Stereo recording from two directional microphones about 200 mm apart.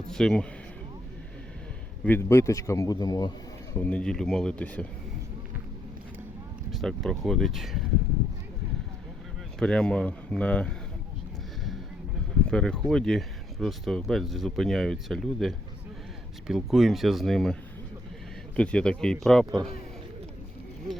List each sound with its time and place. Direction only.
0.1 s a man's voice: 5° left (ahead or behind)
2.0 s a man's voice: 10° left (ahead or behind)
3.8 s speech: 5° left (ahead or behind)
6.7 s speech: centre (ahead or behind)
9.6 s speech: 5° left (ahead or behind)
12.5 s speech: 5° left (ahead or behind)